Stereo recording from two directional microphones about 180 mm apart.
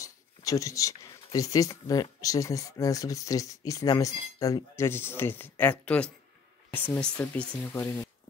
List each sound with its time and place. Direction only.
0.0 s speech: 20° left (ahead or behind)